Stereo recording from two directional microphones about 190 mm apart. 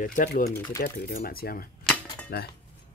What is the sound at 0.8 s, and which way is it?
Speech, 50° left (ahead or behind).